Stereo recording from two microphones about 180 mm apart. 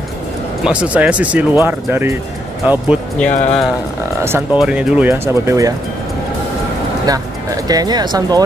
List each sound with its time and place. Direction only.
0.7 s speech: 5° right (ahead or behind)
3.3 s speech: 45° left (ahead or behind)
4.6 s speech: 5° right (ahead or behind)
7.1 s speech: 20° right (ahead or behind)